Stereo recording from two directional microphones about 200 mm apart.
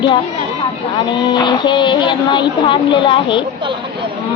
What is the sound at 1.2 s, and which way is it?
A woman's voice, 20° left (ahead or behind).